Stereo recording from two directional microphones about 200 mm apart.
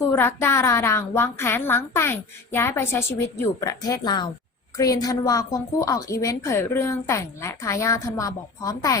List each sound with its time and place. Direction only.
0.0 s a woman's voice: 15° left (ahead or behind)